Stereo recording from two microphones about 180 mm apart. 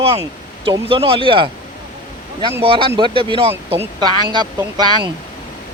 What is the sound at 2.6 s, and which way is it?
Speech, 30° right (ahead or behind).